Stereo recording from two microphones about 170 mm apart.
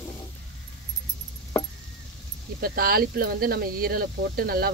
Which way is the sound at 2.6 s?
60° right (ahead or behind).